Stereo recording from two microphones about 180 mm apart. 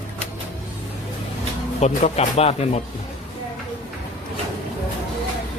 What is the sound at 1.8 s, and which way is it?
Speech, 35° left (ahead or behind).